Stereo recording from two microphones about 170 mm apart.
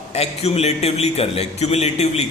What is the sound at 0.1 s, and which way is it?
A man's voice, 40° left (ahead or behind).